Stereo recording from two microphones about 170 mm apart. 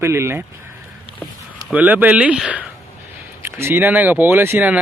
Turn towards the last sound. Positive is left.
turn(degrees=-10)  # may be behind; listen again after turning